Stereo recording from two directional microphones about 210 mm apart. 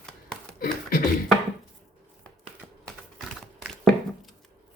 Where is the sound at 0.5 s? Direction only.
40° left (ahead or behind).